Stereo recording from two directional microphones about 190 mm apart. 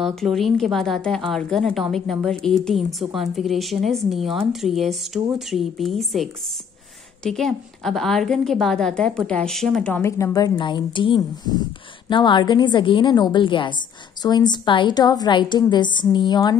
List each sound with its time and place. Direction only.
0.0 s a woman's voice: centre (ahead or behind)
7.2 s a woman's voice: centre (ahead or behind); by 16.5 s 20° left (ahead or behind)